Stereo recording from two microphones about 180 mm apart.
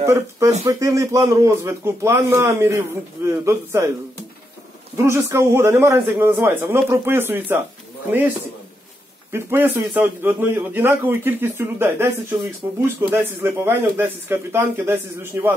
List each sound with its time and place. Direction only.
0.0 s a man's voice: 15° right (ahead or behind)
4.9 s a man's voice: 15° right (ahead or behind)
9.3 s a man's voice: 10° right (ahead or behind)